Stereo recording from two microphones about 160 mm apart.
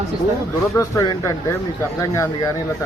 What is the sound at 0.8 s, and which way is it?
A man's voice, 20° left (ahead or behind).